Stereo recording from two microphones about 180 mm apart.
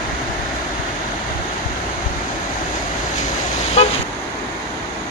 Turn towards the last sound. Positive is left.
turn(degrees=35)  # may be behind; listen again after turning